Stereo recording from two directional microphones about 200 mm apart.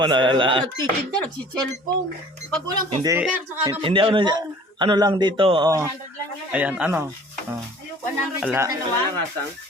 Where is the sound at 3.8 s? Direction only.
25° right (ahead or behind).